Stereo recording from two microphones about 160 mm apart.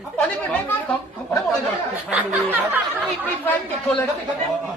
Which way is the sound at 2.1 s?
10° right (ahead or behind).